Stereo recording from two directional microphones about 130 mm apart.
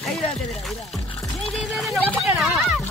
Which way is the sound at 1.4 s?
Centre (ahead or behind).